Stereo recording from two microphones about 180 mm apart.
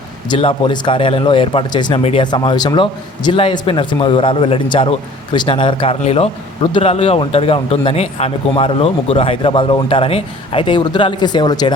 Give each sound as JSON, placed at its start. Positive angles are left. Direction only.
{"t": 0.3, "sound": "speech", "side_deg": 30}